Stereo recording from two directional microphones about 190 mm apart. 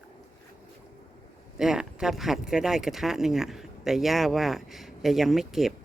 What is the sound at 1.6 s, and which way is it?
Speech, centre (ahead or behind).